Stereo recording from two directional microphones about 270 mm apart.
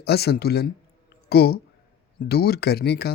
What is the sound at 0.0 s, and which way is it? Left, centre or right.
Speech, left.